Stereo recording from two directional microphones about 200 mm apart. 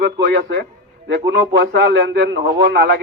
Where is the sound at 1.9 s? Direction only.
60° right (ahead or behind).